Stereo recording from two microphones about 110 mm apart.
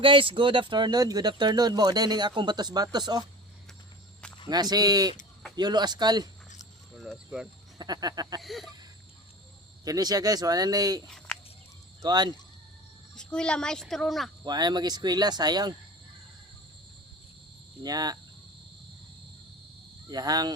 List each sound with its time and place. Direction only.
0.0 s speech: 50° right (ahead or behind)
4.4 s speech: 40° right (ahead or behind)
7.8 s speech: 40° right (ahead or behind)
8.4 s wheeze: centre (ahead or behind)
9.8 s speech: 35° right (ahead or behind)
12.0 s speech: 40° right (ahead or behind)
13.1 s speech: 10° left (ahead or behind)
14.4 s speech: 40° right (ahead or behind)
17.8 s speech: 35° right (ahead or behind)
20.1 s speech: 35° right (ahead or behind)